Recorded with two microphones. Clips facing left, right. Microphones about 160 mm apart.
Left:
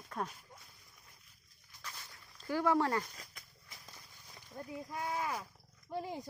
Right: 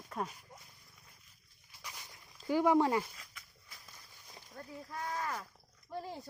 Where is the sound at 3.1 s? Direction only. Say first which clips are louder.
Left 2 dB; 40° left (ahead or behind).